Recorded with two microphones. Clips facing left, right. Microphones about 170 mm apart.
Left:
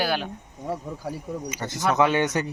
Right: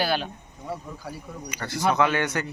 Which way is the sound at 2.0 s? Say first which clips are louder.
Left 2 dB; 20° left (ahead or behind).